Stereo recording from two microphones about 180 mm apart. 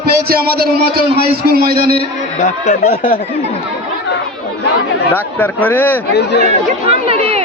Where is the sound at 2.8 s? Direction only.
55° left (ahead or behind).